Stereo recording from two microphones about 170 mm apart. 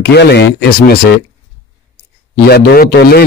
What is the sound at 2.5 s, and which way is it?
Speech, 70° left (ahead or behind).